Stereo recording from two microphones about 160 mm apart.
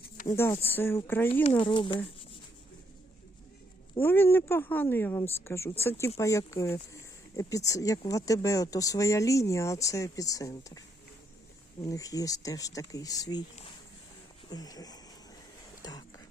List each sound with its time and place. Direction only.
0.3 s speech: 15° left (ahead or behind)
1.5 s speech: 35° left (ahead or behind)
4.0 s speech: 15° left (ahead or behind)
14.5 s speech: 25° left (ahead or behind)
15.8 s a sound: 25° left (ahead or behind)